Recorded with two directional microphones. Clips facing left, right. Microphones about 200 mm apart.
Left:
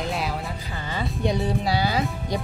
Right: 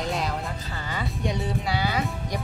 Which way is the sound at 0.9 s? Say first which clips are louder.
Left 4 dB; 30° left (ahead or behind).